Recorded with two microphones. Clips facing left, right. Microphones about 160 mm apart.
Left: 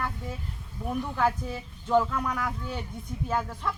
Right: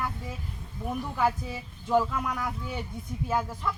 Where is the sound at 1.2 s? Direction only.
5° right (ahead or behind).